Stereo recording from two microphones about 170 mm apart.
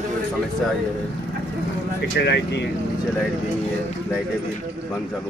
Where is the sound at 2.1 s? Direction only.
85° left.